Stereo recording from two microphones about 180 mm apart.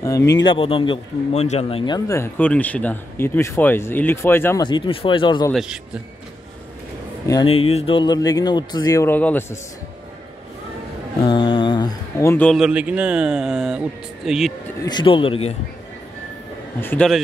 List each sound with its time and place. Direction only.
0.0 s speech: 15° left (ahead or behind)
0.5 s a man's voice: 30° left (ahead or behind)
2.0 s speech: 10° left (ahead or behind)
4.6 s speech: 25° left (ahead or behind)
5.5 s speech: centre (ahead or behind)
7.4 s speech: 35° left (ahead or behind); by 9.6 s 10° left (ahead or behind)
11.2 s mantra: 25° left (ahead or behind)
12.4 s speech: 5° right (ahead or behind)
14.8 s speech: 25° left (ahead or behind)
16.8 s speech: 10° left (ahead or behind)